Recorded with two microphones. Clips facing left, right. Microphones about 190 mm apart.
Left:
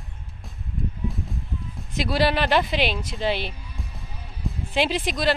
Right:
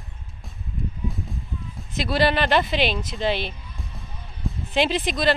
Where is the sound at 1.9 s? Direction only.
10° left (ahead or behind).